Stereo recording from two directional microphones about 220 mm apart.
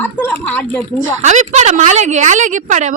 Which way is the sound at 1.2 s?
30° right (ahead or behind).